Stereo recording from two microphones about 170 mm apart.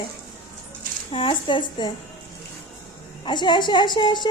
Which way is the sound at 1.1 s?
30° left (ahead or behind).